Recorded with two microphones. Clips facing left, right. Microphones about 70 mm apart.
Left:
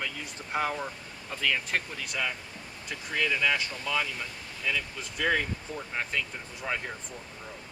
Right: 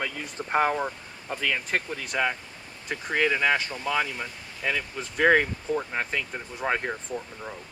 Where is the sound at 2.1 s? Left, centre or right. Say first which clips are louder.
Right 6 dB; right.